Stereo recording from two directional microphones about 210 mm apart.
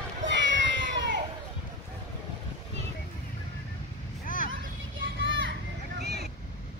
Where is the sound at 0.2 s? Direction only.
60° right (ahead or behind).